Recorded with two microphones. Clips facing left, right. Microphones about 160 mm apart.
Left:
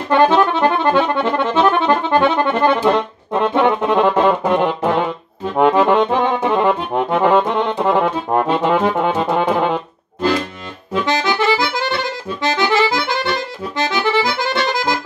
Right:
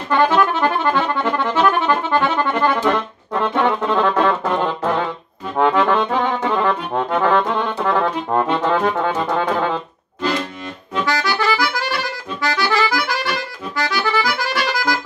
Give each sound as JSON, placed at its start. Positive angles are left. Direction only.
{"t": 0.1, "sound": "accordion", "side_deg": 20}
{"t": 11.1, "sound": "accordion", "side_deg": 20}